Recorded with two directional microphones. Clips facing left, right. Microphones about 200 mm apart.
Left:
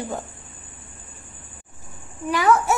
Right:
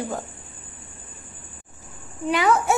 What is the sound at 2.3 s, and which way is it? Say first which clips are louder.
Speech: left 1 dB; 20° right (ahead or behind).